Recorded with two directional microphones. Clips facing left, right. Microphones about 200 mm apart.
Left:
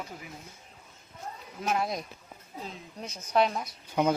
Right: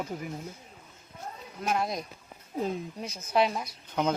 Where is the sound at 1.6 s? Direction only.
Centre (ahead or behind).